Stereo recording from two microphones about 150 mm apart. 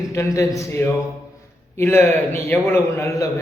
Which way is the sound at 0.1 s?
20° left (ahead or behind).